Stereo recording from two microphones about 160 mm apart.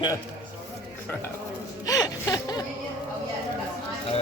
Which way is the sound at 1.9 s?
20° left (ahead or behind).